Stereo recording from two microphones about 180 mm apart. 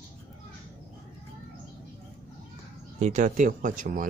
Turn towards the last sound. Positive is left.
turn(degrees=-45)  # may be behind; listen again after turning